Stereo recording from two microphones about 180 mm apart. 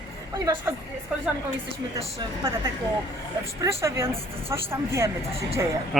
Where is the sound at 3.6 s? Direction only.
15° right (ahead or behind).